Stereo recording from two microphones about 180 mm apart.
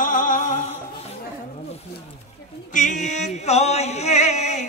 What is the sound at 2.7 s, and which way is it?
Music, 45° left (ahead or behind).